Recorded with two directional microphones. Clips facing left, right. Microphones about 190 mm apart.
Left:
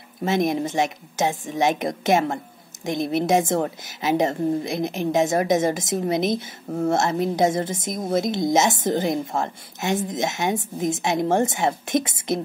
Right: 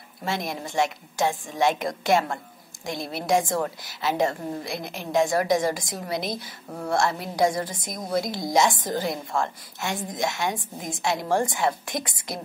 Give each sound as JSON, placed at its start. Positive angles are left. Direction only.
{"t": 0.2, "sound": "a woman's voice", "side_deg": 20}